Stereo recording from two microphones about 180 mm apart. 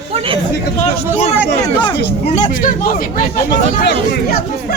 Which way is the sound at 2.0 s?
65° left (ahead or behind).